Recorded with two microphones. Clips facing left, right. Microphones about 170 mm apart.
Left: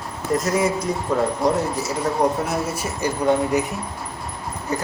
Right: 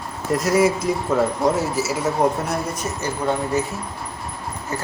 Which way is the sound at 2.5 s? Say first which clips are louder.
Even; 5° left (ahead or behind).